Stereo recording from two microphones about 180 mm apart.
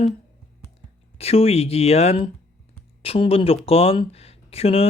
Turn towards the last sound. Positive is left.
turn(degrees=35)  # may be behind; listen again after turning